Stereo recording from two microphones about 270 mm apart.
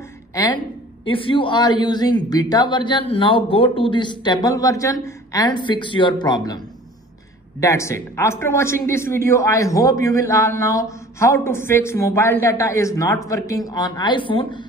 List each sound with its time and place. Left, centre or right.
0.3 s a woman's voice: centre
7.6 s a man's voice: centre